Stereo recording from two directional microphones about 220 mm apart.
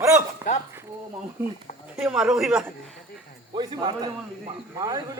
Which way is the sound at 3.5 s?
20° right (ahead or behind).